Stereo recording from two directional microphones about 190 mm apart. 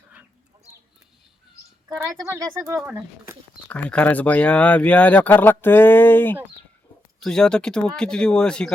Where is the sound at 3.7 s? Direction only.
5° left (ahead or behind).